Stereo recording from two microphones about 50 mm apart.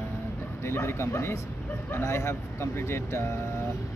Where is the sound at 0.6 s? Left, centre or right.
Left.